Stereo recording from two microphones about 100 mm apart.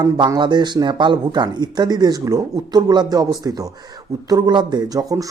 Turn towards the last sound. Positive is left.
turn(degrees=-40)  # may be behind; listen again after turning